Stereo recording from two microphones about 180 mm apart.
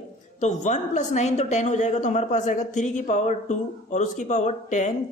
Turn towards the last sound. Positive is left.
turn(degrees=40)  # may be behind; listen again after turning